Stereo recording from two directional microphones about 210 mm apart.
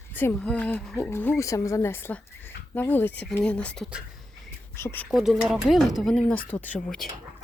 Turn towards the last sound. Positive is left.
turn(degrees=10)  # may be behind; listen again after turning